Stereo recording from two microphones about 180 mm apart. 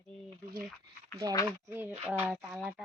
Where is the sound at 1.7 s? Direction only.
10° right (ahead or behind).